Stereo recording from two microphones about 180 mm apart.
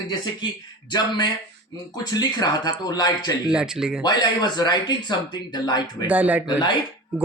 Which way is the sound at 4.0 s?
25° left (ahead or behind).